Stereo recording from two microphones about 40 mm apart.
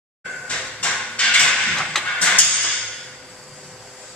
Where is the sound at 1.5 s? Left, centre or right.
Centre.